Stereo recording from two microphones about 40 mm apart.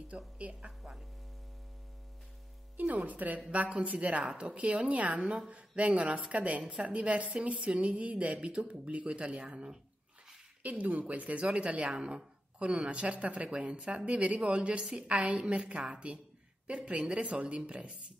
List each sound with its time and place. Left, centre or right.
0.4 s a woman's voice: right
0.7 s speech: centre
2.8 s a woman's voice: right
10.6 s a woman's voice: right